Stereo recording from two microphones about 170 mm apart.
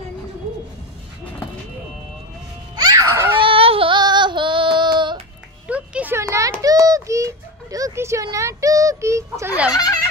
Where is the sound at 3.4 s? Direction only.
30° right (ahead or behind).